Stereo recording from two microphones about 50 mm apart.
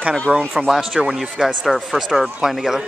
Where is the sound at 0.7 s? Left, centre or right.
Centre.